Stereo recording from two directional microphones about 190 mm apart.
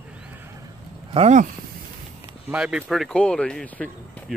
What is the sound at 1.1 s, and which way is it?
Speech, 35° right (ahead or behind).